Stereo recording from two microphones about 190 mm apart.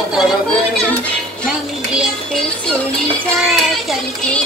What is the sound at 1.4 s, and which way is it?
A child's voice, centre (ahead or behind).